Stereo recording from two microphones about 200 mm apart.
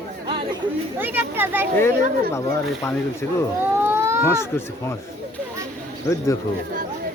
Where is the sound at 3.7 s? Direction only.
10° right (ahead or behind).